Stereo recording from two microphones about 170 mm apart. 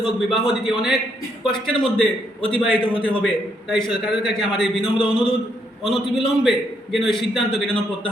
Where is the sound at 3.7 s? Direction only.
25° left (ahead or behind).